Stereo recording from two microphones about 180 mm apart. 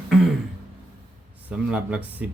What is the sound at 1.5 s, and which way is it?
Speech, 5° right (ahead or behind).